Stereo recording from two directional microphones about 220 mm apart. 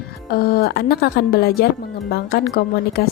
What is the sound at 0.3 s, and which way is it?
A woman's voice, 45° left (ahead or behind).